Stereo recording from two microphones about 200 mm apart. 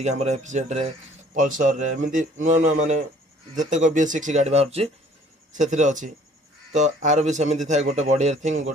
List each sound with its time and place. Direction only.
0.0 s speech: 35° right (ahead or behind)